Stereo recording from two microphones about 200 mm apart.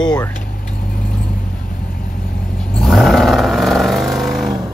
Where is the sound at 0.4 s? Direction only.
45° left (ahead or behind).